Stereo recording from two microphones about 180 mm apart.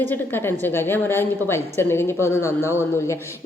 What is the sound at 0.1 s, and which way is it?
A woman's voice, 10° left (ahead or behind).